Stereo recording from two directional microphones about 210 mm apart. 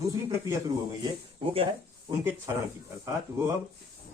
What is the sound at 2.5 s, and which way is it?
Speech, 15° right (ahead or behind).